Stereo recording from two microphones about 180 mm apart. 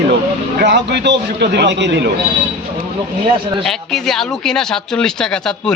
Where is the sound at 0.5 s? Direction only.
70° right (ahead or behind).